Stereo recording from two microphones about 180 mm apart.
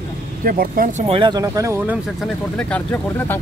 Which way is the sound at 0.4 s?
55° right (ahead or behind).